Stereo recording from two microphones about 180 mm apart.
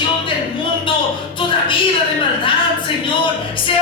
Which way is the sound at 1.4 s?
30° left (ahead or behind).